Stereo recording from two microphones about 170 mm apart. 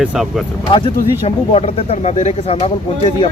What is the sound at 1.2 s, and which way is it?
Speech, 35° left (ahead or behind).